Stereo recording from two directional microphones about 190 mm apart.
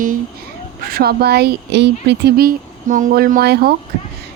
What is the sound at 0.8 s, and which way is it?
Speech, 55° right (ahead or behind).